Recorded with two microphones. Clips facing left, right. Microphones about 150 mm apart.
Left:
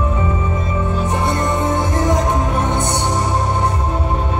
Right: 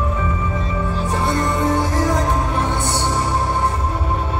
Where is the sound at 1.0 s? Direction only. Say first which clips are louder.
Even; 20° left (ahead or behind).